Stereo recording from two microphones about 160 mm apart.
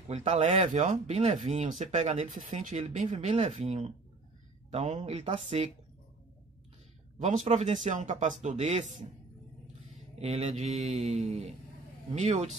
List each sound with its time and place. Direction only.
0.1 s speech: 40° right (ahead or behind)
7.2 s speech: 50° right (ahead or behind)
10.1 s speech: 40° right (ahead or behind)